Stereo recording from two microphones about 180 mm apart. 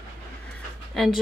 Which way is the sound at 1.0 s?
Centre (ahead or behind).